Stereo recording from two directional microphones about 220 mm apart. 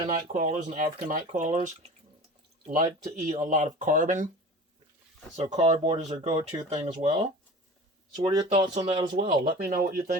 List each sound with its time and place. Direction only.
0.1 s speech: 35° right (ahead or behind)
5.4 s speech: 30° right (ahead or behind)
8.1 s speech: 15° right (ahead or behind)
8.5 s speech: 30° right (ahead or behind)
9.6 s speech: 45° right (ahead or behind)